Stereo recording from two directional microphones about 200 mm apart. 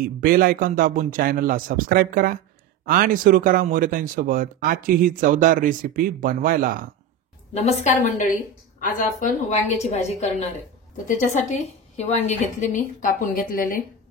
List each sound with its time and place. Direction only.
0.0 s speech: 45° right (ahead or behind)
7.5 s a woman's voice: 35° left (ahead or behind)